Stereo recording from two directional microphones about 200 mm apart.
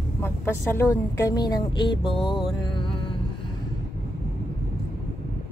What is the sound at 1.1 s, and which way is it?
Music, 20° left (ahead or behind).